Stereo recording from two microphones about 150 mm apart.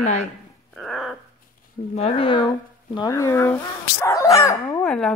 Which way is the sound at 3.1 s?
20° left (ahead or behind).